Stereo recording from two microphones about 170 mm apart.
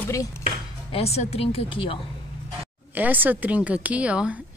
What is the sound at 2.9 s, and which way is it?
Speech, 10° right (ahead or behind).